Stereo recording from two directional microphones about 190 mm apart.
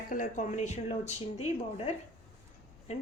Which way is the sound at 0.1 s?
40° left (ahead or behind).